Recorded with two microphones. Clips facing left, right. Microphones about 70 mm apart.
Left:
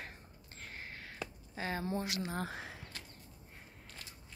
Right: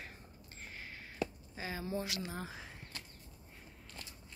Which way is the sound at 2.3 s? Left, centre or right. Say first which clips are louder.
Left 5 dB; left.